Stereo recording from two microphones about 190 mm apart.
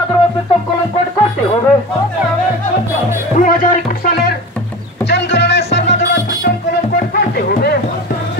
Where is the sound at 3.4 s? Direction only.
45° left (ahead or behind).